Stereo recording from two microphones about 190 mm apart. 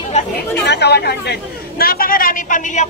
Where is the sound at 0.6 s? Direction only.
65° left (ahead or behind); by 2.8 s 45° left (ahead or behind).